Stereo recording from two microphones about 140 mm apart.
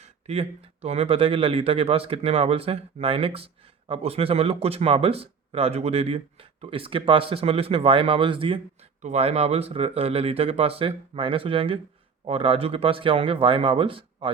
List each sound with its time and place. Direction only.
0.0 s speech: 45° right (ahead or behind)
9.0 s speech: 55° right (ahead or behind); by 14.3 s 40° right (ahead or behind)